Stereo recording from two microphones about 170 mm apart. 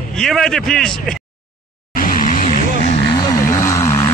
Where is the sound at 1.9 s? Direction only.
50° left (ahead or behind).